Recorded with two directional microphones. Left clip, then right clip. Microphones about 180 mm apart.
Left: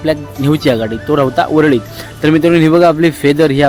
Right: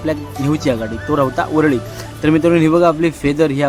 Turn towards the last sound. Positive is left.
turn(degrees=15)  # may be behind; listen again after turning